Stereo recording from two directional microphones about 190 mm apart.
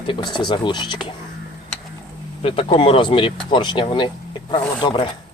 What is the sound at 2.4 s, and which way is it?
Speech, 30° left (ahead or behind).